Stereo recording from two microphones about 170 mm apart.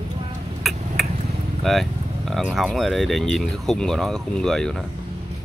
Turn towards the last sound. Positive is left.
turn(degrees=5)  # may be behind; listen again after turning